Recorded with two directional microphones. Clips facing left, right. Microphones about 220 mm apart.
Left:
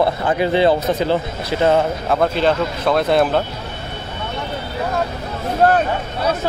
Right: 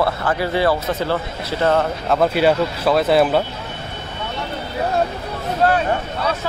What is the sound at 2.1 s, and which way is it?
Speech, 5° right (ahead or behind).